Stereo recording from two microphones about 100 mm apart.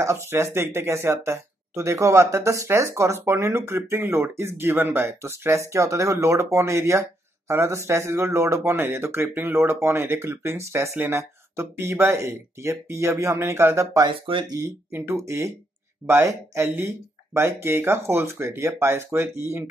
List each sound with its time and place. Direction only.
0.0 s speech: 25° right (ahead or behind)
14.0 s speech: 55° right (ahead or behind)
14.5 s speech: 25° right (ahead or behind)